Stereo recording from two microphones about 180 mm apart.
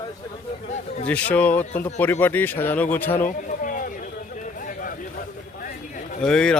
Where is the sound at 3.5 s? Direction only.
45° left (ahead or behind).